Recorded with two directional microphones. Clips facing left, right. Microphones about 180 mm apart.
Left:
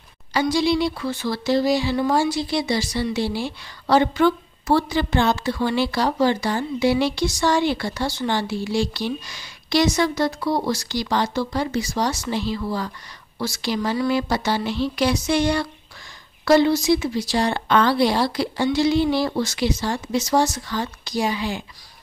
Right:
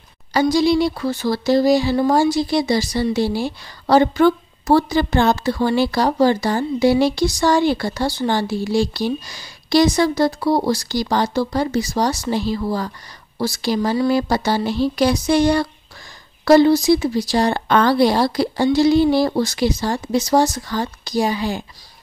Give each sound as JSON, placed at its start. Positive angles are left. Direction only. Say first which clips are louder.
{"t": 0.3, "sound": "speech", "louder": "right 4 dB", "side_deg": -40}